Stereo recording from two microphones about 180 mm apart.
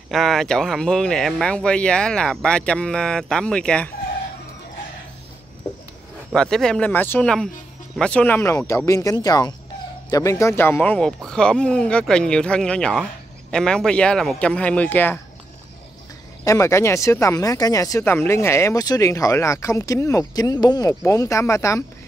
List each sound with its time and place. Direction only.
0.1 s speech: centre (ahead or behind)
6.3 s speech: 5° left (ahead or behind)
16.4 s speech: 15° left (ahead or behind)